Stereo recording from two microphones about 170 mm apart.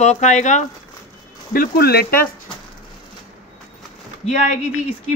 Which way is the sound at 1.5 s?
60° left (ahead or behind).